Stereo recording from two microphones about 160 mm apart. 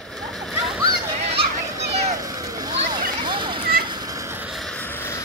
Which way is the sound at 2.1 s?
20° right (ahead or behind).